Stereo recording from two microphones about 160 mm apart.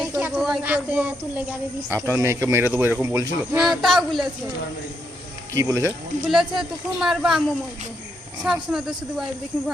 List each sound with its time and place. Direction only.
0.0 s a sound: 10° right (ahead or behind)
0.6 s speech: 10° right (ahead or behind)
3.8 s speech: centre (ahead or behind)
5.5 s speech: 15° right (ahead or behind)
6.3 s speech: centre (ahead or behind)